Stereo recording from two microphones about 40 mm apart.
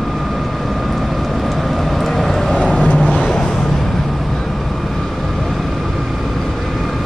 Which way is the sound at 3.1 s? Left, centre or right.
Centre.